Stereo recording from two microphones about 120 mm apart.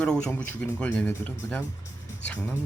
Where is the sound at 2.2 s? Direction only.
10° left (ahead or behind).